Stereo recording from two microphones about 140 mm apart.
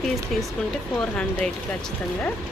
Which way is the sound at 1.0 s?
5° left (ahead or behind).